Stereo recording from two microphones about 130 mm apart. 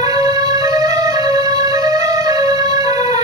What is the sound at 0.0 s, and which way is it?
Music, 30° right (ahead or behind).